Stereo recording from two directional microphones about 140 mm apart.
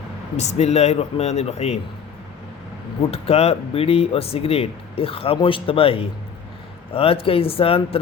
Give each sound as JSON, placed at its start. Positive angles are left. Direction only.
{"t": 0.3, "sound": "speech", "side_deg": 50}
{"t": 3.0, "sound": "speech", "side_deg": 45}